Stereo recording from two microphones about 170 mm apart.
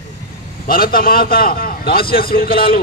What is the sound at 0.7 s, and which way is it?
A man's voice, 60° left (ahead or behind).